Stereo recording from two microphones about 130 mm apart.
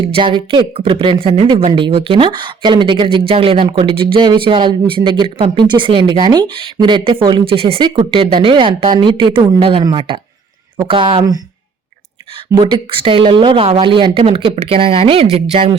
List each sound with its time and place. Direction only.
0.1 s speech: 40° right (ahead or behind)
9.6 s a woman's voice: 45° right (ahead or behind)
12.5 s a woman's voice: 40° right (ahead or behind)